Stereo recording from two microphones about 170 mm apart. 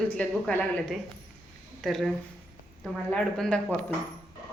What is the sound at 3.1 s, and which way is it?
Speech, 5° left (ahead or behind).